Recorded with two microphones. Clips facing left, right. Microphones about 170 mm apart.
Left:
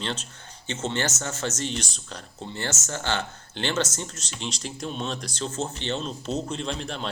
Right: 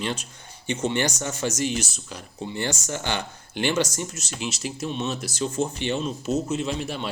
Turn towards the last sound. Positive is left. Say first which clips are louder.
# right 4 dB
turn(degrees=-5)  # may be behind; listen again after turning